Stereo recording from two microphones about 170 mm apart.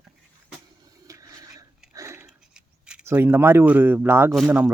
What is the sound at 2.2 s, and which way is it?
Scissors, 5° right (ahead or behind).